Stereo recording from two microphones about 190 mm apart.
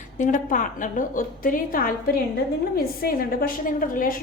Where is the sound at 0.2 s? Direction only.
45° left (ahead or behind).